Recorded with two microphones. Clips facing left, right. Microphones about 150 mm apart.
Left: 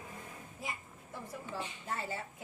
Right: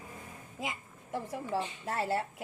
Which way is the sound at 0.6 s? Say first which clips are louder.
Right 5 dB; 90° right.